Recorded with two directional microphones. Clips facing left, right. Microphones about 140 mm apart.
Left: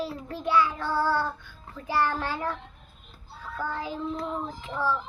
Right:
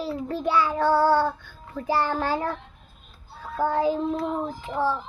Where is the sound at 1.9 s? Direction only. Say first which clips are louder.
Right 3 dB; 30° right (ahead or behind).